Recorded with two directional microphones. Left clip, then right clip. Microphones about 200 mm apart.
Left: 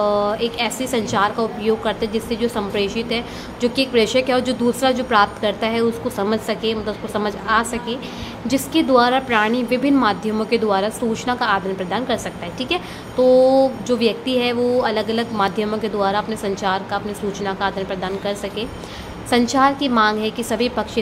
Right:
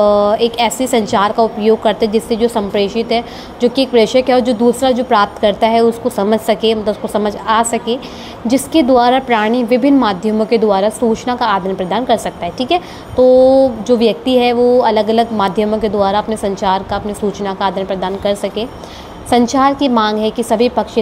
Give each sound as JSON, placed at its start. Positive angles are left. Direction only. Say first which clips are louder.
{"t": 0.0, "sound": "a woman's voice", "louder": "right 8 dB", "side_deg": -20}